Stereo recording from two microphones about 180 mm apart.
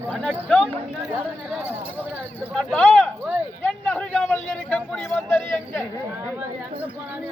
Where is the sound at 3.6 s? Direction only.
10° left (ahead or behind).